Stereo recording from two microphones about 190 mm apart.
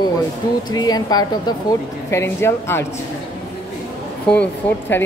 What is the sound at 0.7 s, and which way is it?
A woman's voice, 20° left (ahead or behind).